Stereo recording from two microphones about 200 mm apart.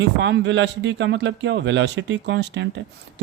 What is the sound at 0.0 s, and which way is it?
Speech, 60° right (ahead or behind).